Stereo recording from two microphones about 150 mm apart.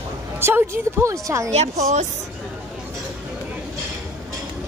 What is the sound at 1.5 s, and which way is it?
Speech, 45° right (ahead or behind).